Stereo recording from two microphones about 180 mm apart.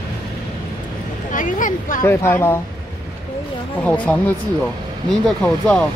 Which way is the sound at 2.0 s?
15° left (ahead or behind).